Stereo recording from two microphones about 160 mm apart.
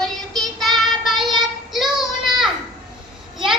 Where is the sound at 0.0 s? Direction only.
Centre (ahead or behind).